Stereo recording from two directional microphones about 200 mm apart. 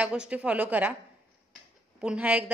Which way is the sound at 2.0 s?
5° right (ahead or behind).